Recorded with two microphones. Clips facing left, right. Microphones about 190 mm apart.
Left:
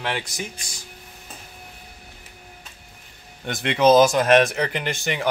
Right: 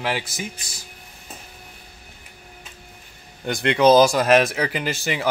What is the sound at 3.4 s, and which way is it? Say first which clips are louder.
Speech: right 1 dB; centre (ahead or behind).